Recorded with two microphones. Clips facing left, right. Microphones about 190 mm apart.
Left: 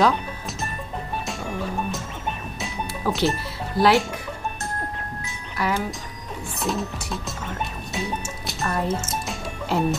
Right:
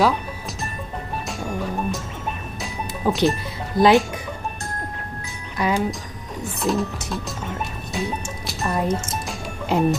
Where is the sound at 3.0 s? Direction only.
20° right (ahead or behind).